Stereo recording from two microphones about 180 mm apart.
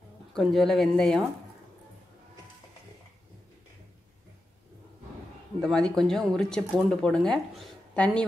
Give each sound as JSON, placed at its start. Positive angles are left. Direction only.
{"t": 0.3, "sound": "speech", "side_deg": 0}
{"t": 5.6, "sound": "speech", "side_deg": 5}